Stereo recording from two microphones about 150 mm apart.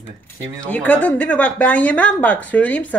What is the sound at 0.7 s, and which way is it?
Speech, 10° left (ahead or behind).